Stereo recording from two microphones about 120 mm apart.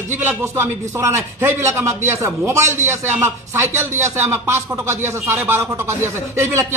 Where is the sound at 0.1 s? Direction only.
20° right (ahead or behind).